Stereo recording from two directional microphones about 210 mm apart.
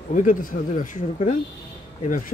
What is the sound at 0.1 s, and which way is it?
Speech, 40° left (ahead or behind).